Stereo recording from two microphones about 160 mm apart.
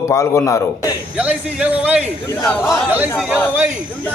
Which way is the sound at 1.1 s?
10° right (ahead or behind).